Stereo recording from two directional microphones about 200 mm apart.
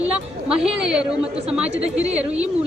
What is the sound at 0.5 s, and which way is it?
Speech, 5° right (ahead or behind).